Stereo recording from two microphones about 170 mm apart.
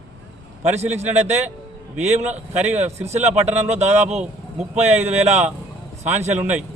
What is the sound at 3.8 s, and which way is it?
Speech, 40° right (ahead or behind).